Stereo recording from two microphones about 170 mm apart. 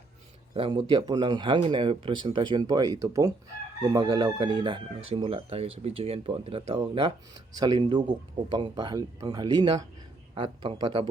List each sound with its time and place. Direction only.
0.5 s speech: 30° right (ahead or behind)